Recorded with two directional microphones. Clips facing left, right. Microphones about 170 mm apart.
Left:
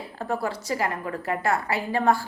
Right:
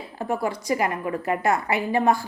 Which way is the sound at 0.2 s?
15° right (ahead or behind).